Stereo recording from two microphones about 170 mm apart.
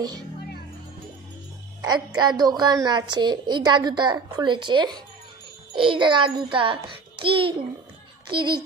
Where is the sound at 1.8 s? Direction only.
25° right (ahead or behind).